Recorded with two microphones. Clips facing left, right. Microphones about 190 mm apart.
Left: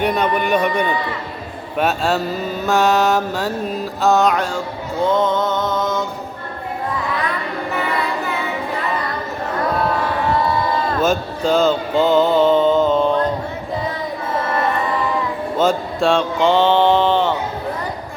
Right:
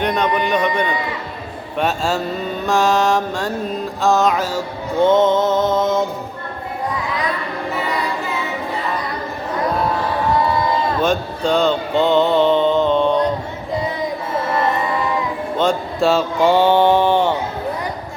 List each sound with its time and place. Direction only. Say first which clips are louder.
0.0 s a man's voice: even; 5° left (ahead or behind)
1.8 s mantra: left 1 dB; centre (ahead or behind)
5.0 s music: right 3 dB; 25° right (ahead or behind)
11.0 s mantra: even; 5° left (ahead or behind)
15.5 s mantra: left 1 dB; centre (ahead or behind)